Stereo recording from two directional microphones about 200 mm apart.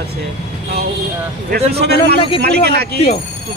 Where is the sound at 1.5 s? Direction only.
55° right (ahead or behind).